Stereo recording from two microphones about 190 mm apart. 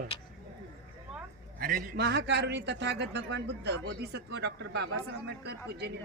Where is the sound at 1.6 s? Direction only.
50° right (ahead or behind).